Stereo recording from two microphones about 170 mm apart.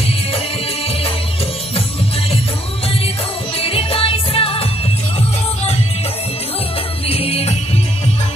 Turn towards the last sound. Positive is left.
turn(degrees=35)  # may be behind; listen again after turning